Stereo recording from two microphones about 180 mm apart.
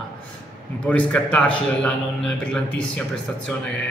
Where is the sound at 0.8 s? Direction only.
10° left (ahead or behind).